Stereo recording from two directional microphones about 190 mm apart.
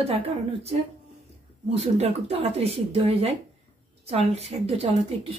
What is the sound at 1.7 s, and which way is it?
Speech, 35° right (ahead or behind).